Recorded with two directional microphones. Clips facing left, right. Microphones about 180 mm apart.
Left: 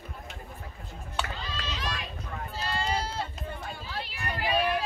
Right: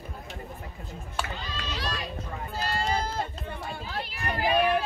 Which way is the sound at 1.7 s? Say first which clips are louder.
Right 4 dB; 35° right (ahead or behind).